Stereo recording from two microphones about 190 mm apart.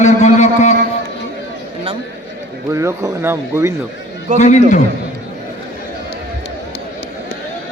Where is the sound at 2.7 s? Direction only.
15° right (ahead or behind).